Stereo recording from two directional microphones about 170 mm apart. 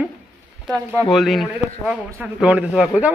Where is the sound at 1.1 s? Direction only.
Centre (ahead or behind).